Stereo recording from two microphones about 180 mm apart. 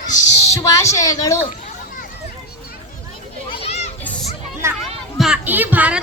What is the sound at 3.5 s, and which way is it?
Children playing, 35° left (ahead or behind).